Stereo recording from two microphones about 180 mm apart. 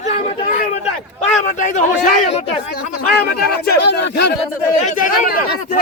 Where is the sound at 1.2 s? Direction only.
45° left (ahead or behind).